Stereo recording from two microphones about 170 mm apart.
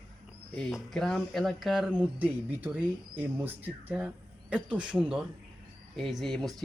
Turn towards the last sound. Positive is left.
turn(degrees=0)  # may be behind; listen again after turning